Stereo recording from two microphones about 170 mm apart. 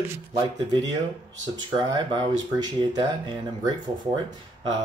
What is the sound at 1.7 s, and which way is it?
Speech, 25° right (ahead or behind).